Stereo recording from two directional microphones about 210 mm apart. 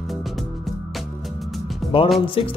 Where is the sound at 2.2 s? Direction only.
25° left (ahead or behind).